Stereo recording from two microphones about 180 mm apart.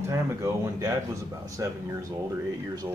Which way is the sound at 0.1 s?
15° right (ahead or behind).